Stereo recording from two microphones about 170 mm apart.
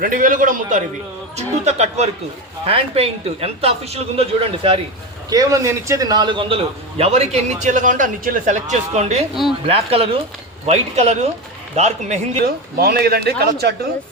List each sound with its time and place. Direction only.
0.0 s a man's voice: 50° right (ahead or behind)
1.4 s a man's voice: 40° right (ahead or behind)
5.3 s a man's voice: 20° right (ahead or behind); by 9.2 s 40° right (ahead or behind)
9.3 s speech: centre (ahead or behind)
9.6 s a man's voice: 35° right (ahead or behind)
12.5 s speech: 65° right (ahead or behind)